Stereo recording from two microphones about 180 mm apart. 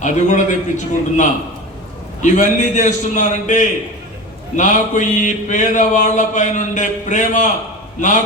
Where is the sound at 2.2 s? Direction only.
45° left (ahead or behind).